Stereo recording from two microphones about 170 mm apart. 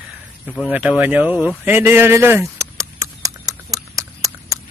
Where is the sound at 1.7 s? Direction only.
15° right (ahead or behind).